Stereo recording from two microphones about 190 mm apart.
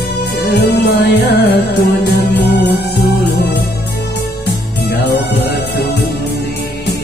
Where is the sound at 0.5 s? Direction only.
65° left (ahead or behind).